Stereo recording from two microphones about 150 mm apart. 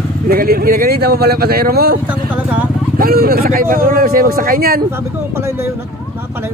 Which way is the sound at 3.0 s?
80° right.